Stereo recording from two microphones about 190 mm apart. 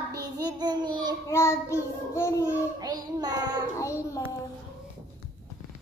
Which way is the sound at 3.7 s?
15° left (ahead or behind).